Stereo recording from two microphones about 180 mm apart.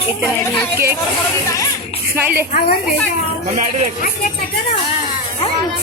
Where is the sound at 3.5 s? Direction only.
50° right (ahead or behind).